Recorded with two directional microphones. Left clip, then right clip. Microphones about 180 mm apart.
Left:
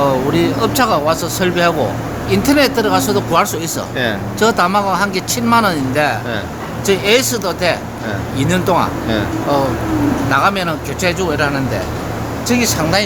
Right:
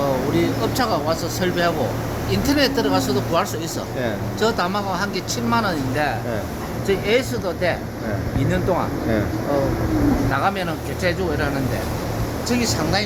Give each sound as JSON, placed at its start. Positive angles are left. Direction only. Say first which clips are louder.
{"t": 0.3, "sound": "speech", "louder": "left 6 dB", "side_deg": 65}
{"t": 10.3, "sound": "speech", "louder": "left 7 dB", "side_deg": 65}